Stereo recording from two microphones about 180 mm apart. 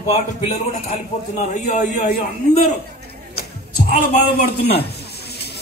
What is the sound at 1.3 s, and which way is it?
Speech, 40° left (ahead or behind).